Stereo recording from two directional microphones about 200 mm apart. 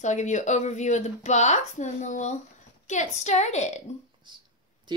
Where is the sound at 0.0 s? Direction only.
35° left (ahead or behind).